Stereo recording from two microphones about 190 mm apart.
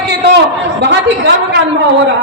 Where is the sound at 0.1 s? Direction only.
60° right (ahead or behind).